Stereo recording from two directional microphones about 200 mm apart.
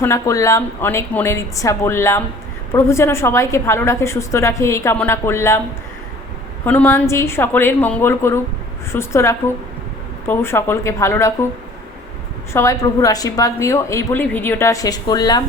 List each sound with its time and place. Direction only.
0.0 s a woman's voice: 15° left (ahead or behind)
6.7 s a woman's voice: 10° left (ahead or behind)
12.5 s a woman's voice: 15° left (ahead or behind)